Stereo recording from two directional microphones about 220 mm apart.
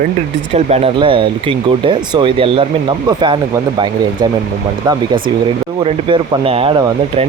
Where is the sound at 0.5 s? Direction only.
30° right (ahead or behind).